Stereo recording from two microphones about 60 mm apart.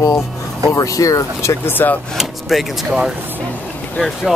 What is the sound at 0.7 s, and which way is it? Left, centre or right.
Speech, left.